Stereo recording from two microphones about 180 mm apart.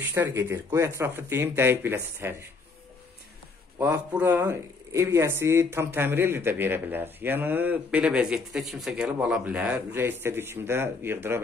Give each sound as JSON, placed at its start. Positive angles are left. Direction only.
{"t": 0.1, "sound": "speech", "side_deg": -15}
{"t": 3.7, "sound": "a man's voice", "side_deg": -20}